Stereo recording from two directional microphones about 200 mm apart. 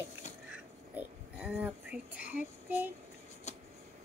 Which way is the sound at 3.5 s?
35° left (ahead or behind).